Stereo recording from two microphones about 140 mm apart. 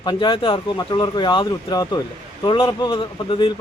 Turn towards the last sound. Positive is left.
turn(degrees=35)  # may be behind; listen again after turning